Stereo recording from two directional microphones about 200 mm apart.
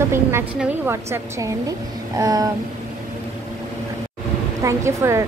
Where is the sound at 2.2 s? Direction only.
20° right (ahead or behind).